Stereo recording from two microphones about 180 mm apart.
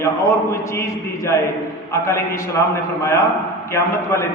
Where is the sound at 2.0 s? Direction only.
15° left (ahead or behind).